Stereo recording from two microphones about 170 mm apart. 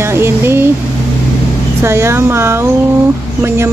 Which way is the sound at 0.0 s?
15° right (ahead or behind).